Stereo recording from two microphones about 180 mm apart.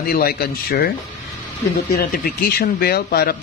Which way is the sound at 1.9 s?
60° left (ahead or behind).